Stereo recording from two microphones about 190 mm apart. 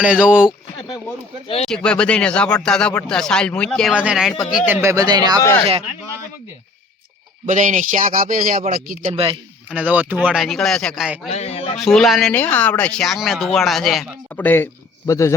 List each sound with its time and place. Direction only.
0.0 s speech: 5° right (ahead or behind)
1.6 s speech: 5° left (ahead or behind); by 5.4 s 20° right (ahead or behind)
7.4 s speech: 40° right (ahead or behind)
9.1 s speech: 30° right (ahead or behind)
9.6 s speech: 5° right (ahead or behind)
11.3 s a man's voice: 35° left (ahead or behind)
11.8 s speech: centre (ahead or behind)